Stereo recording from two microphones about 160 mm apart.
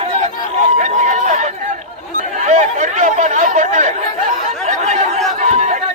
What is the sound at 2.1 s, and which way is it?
Chatter, 50° right (ahead or behind).